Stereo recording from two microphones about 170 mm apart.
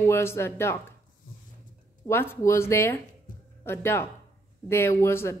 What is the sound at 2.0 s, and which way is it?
Speech, 15° left (ahead or behind).